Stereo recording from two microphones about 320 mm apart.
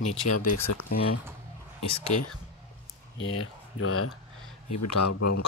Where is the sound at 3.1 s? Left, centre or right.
Left.